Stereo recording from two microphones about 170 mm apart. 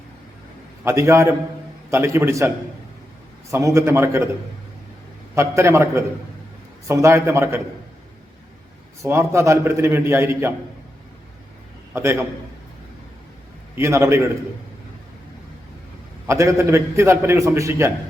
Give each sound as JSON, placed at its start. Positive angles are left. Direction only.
{"t": 0.9, "sound": "a man's voice", "side_deg": -15}
{"t": 3.5, "sound": "a man's voice", "side_deg": -15}
{"t": 5.3, "sound": "a man's voice", "side_deg": -15}
{"t": 9.0, "sound": "a man's voice", "side_deg": -15}
{"t": 11.9, "sound": "a man's voice", "side_deg": -15}
{"t": 13.7, "sound": "a man's voice", "side_deg": -15}
{"t": 16.2, "sound": "a man's voice", "side_deg": -15}